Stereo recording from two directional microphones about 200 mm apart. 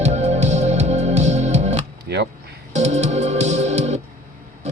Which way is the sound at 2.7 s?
35° right (ahead or behind).